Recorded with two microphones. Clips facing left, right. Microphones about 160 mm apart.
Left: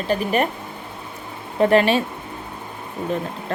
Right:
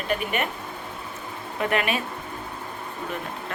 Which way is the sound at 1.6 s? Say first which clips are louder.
Left 9 dB; 30° left (ahead or behind).